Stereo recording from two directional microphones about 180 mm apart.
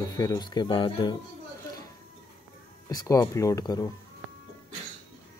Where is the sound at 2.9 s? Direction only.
20° left (ahead or behind).